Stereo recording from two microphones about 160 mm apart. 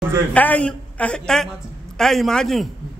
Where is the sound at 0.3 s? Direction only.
10° left (ahead or behind).